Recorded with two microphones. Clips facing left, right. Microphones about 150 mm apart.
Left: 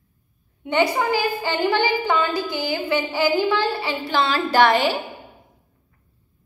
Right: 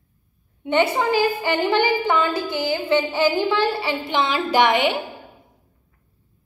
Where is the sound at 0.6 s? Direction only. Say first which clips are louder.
Right 1 dB; 20° right (ahead or behind).